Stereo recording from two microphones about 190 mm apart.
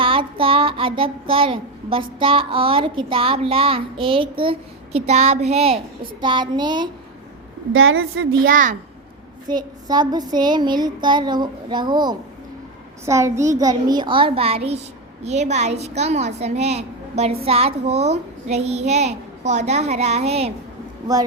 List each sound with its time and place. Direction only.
0.0 s child singing: 25° right (ahead or behind)
7.7 s a woman's voice: 90° right
8.4 s speech: 45° right (ahead or behind)
9.5 s child singing: 20° right (ahead or behind)
15.2 s a child's voice: 35° right (ahead or behind)